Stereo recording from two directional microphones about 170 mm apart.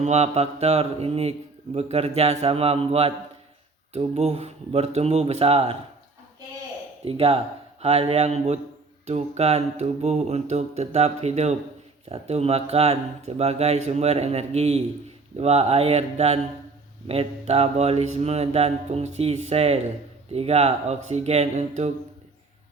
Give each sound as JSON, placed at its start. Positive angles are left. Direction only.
{"t": 0.0, "sound": "a man's voice", "side_deg": -40}
{"t": 7.0, "sound": "a man's voice", "side_deg": -35}